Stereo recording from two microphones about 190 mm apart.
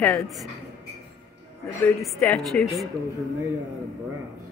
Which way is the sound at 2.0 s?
Centre (ahead or behind).